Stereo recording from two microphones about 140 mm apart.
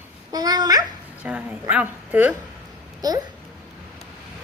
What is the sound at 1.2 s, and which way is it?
A woman's voice, 10° right (ahead or behind).